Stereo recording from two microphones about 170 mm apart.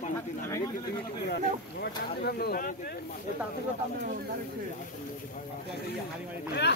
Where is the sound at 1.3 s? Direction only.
75° left (ahead or behind).